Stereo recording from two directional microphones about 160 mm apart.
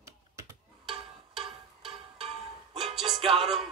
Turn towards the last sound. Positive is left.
turn(degrees=-35)  # may be behind; listen again after turning